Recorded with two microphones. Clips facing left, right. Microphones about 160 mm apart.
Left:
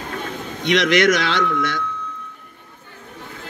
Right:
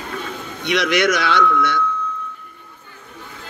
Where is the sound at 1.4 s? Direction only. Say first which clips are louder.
Right 3 dB; 45° left (ahead or behind).